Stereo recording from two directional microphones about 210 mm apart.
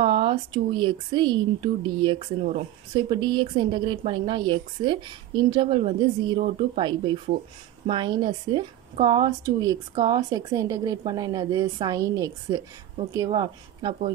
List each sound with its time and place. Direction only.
0.0 s a woman's voice: 25° right (ahead or behind)